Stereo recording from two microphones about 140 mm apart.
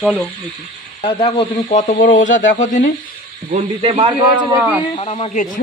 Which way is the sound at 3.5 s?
45° right (ahead or behind).